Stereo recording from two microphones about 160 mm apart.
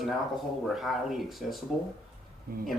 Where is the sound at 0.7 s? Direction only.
Centre (ahead or behind).